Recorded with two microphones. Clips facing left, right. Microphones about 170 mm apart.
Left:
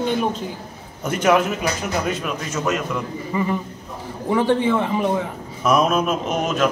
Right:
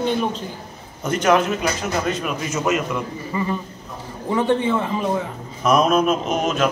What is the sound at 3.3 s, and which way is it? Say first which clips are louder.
A man's voice: left 3 dB; 15° left (ahead or behind).